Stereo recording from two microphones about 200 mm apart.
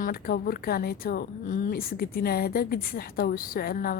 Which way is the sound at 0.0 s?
50° left (ahead or behind).